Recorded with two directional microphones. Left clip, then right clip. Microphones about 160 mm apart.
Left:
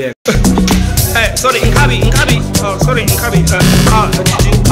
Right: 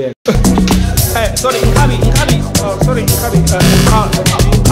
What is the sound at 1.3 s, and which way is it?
Speech, centre (ahead or behind).